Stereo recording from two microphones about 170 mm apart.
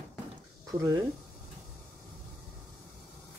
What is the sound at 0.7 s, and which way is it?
Speech, 20° right (ahead or behind).